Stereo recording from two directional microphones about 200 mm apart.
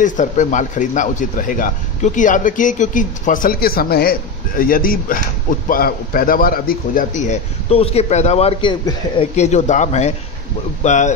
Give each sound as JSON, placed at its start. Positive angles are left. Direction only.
{"t": 0.0, "sound": "speech", "side_deg": 40}